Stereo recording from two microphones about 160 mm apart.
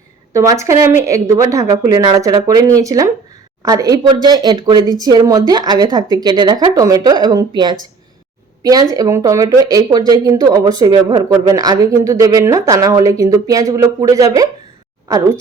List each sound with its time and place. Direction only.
0.3 s speech: 20° right (ahead or behind)